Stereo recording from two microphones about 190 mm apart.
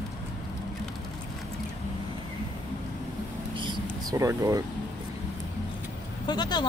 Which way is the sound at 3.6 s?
20° right (ahead or behind).